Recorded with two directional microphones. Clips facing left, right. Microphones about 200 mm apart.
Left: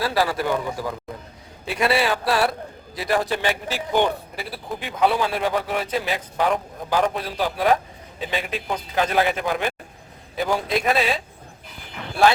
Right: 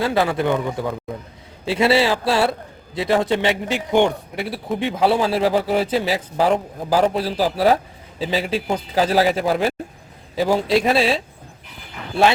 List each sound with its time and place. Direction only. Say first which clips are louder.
0.0 s a man's voice: right 3 dB; 20° right (ahead or behind)
4.4 s speech: right 7 dB; centre (ahead or behind)
4.8 s a man's voice: right 3 dB; 30° right (ahead or behind)